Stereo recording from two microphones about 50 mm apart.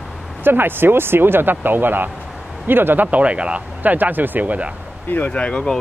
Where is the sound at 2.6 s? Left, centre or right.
Right.